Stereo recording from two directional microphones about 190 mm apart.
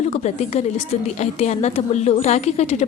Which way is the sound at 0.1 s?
35° left (ahead or behind).